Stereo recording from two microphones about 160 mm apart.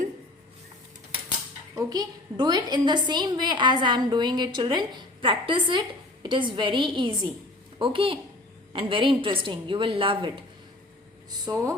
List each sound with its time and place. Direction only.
1.9 s a woman's voice: 25° right (ahead or behind)
11.5 s a woman's voice: 25° right (ahead or behind)